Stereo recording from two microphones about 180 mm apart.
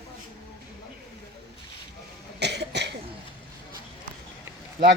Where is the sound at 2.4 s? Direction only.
70° right (ahead or behind).